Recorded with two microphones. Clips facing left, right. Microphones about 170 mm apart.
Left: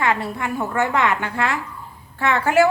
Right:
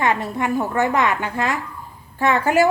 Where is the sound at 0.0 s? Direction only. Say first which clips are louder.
Right 2 dB; 20° right (ahead or behind).